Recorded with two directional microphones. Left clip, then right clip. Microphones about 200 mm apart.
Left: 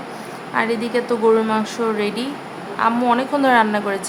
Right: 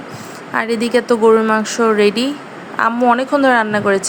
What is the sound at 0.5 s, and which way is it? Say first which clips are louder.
A woman's voice: right 4 dB; 35° right (ahead or behind).